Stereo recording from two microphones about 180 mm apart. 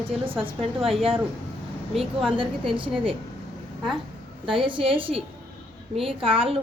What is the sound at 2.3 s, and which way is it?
Speech, 30° right (ahead or behind).